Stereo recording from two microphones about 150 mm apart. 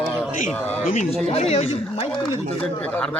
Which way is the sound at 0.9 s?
50° left (ahead or behind).